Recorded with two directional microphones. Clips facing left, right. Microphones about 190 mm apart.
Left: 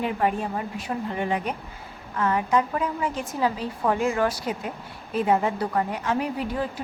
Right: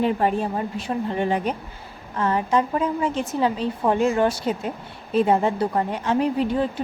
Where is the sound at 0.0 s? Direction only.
30° right (ahead or behind).